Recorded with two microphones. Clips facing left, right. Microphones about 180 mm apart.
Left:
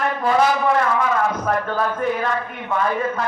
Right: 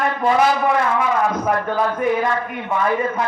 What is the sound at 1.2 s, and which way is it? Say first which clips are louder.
A man's voice: right 2 dB; 15° right (ahead or behind).